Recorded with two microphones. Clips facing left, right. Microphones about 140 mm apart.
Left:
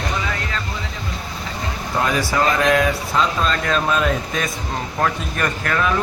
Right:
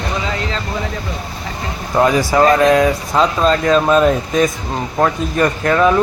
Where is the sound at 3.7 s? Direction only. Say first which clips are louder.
Right 8 dB; 35° right (ahead or behind).